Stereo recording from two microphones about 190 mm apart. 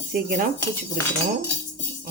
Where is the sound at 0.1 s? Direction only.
60° right (ahead or behind).